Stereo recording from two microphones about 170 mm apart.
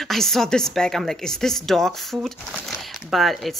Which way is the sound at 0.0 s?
Centre (ahead or behind).